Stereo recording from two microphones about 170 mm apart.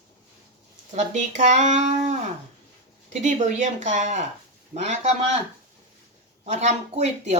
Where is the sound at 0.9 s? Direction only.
45° right (ahead or behind).